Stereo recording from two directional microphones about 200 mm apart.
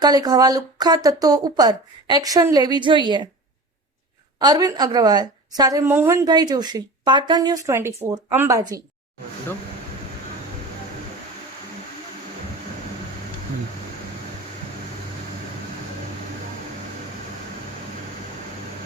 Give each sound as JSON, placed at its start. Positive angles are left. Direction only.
{"t": 0.0, "sound": "a woman's voice", "side_deg": -20}
{"t": 4.4, "sound": "a woman's voice", "side_deg": -20}